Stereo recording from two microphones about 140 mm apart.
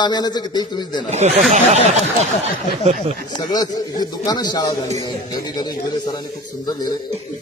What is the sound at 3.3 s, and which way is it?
A man's voice, 30° left (ahead or behind).